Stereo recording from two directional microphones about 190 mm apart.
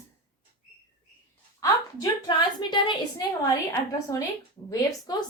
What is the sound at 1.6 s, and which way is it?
A woman's voice, 20° left (ahead or behind).